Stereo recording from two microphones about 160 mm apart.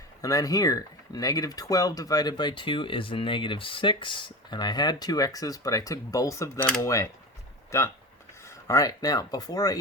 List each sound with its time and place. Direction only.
0.2 s speech: 20° left (ahead or behind)